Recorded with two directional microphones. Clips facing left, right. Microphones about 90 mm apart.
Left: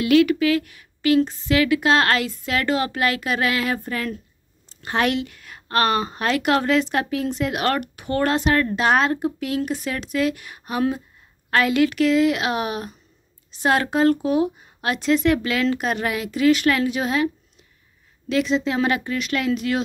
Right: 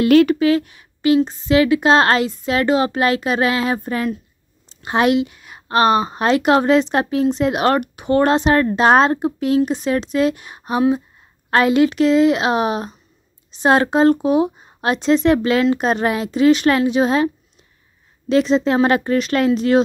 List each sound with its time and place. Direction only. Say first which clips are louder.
0.0 s speech: right 4 dB; 40° right (ahead or behind)
18.3 s speech: right 6 dB; 35° right (ahead or behind)